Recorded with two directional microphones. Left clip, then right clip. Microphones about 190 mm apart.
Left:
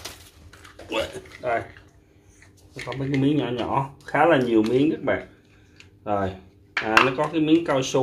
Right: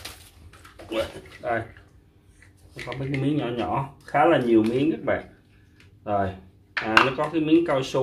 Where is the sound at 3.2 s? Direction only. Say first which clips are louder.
Left 3 dB; 35° left (ahead or behind).